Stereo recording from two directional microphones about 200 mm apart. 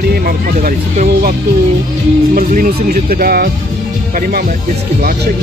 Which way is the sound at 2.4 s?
45° right (ahead or behind).